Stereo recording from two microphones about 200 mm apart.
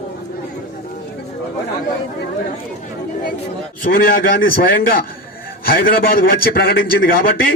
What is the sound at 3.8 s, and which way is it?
A man's voice, 45° left (ahead or behind).